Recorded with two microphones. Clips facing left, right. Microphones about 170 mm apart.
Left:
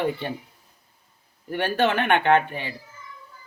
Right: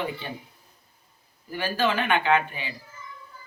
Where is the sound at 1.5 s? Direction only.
65° left (ahead or behind).